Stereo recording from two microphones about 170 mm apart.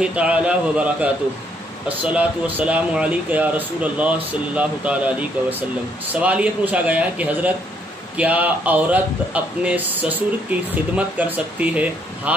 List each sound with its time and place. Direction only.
0.0 s speech: 10° right (ahead or behind)